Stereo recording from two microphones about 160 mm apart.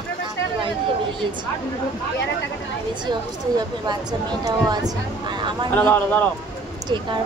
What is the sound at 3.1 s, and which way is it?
Speech, 25° right (ahead or behind).